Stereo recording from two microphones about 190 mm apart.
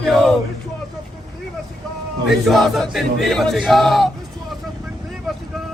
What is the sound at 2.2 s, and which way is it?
Battle cry, centre (ahead or behind).